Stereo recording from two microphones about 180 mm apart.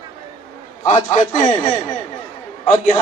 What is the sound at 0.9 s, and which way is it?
Speech, 45° left (ahead or behind).